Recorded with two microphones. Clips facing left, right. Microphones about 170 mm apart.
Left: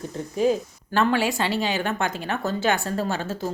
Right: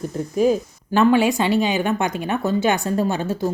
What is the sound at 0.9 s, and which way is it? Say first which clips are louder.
Speech: right 6 dB; 15° right (ahead or behind).